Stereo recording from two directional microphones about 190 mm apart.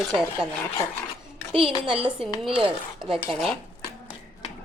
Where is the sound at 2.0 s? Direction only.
30° right (ahead or behind).